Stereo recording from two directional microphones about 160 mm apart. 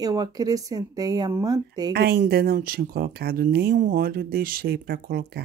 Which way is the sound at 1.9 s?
85° right.